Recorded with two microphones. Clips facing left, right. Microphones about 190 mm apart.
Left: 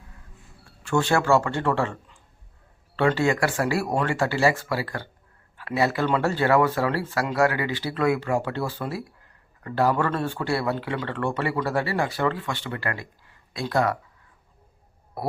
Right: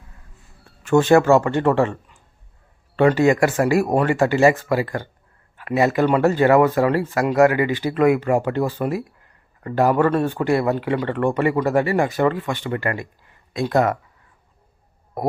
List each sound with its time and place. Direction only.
0.8 s speech: 20° right (ahead or behind)
3.2 s speech: 15° right (ahead or behind)
5.8 s speech: 15° right (ahead or behind)